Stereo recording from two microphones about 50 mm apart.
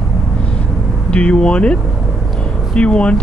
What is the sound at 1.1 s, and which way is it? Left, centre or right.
Speech, left.